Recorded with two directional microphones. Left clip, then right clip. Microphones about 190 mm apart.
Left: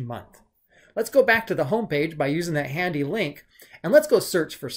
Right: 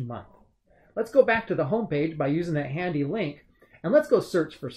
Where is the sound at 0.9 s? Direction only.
10° left (ahead or behind).